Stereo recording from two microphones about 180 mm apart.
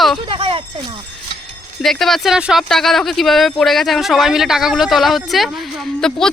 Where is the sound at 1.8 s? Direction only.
Centre (ahead or behind).